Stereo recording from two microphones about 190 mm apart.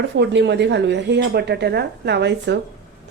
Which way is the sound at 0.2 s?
65° right (ahead or behind).